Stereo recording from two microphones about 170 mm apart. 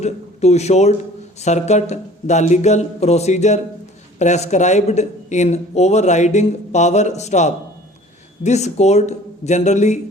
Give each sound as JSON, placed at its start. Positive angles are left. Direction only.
{"t": 0.0, "sound": "speech", "side_deg": 40}